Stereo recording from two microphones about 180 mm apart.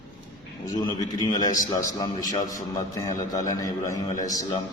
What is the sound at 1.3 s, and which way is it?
A man's voice, 20° left (ahead or behind).